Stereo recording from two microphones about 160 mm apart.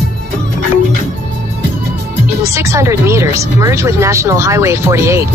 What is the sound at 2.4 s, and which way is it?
Speech, 20° right (ahead or behind).